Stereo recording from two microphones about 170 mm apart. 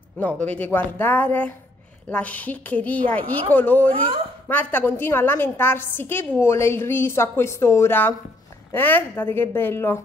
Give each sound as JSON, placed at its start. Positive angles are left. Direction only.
{"t": 0.2, "sound": "a woman's voice", "side_deg": 10}
{"t": 3.9, "sound": "speech", "side_deg": -30}
{"t": 4.5, "sound": "a woman's voice", "side_deg": 10}